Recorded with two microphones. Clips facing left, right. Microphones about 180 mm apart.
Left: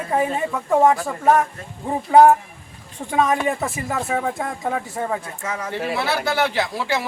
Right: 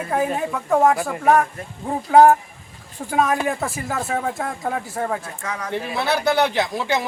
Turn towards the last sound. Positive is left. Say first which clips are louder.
# right 1 dB
turn(degrees=-20)  # may be behind; listen again after turning